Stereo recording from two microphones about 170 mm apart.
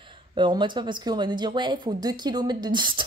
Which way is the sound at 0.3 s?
30° right (ahead or behind).